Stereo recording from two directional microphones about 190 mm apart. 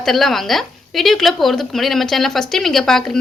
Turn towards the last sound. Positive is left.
turn(degrees=0)  # may be behind; listen again after turning